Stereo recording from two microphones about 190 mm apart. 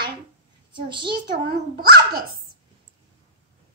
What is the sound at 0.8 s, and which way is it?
Speech, 25° right (ahead or behind).